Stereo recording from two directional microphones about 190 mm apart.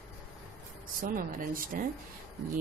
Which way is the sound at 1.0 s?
45° right (ahead or behind).